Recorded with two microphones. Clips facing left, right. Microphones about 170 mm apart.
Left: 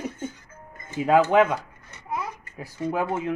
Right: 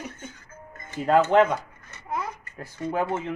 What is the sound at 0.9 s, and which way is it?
Speech, 5° left (ahead or behind).